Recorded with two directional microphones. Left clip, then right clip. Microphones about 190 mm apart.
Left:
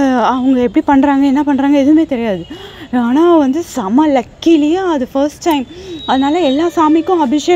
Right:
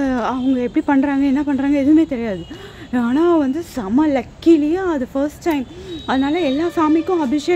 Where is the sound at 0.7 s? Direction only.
20° left (ahead or behind).